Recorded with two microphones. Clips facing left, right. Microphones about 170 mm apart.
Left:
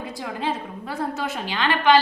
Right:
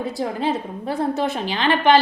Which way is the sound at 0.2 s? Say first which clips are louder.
Right 4 dB; 30° right (ahead or behind).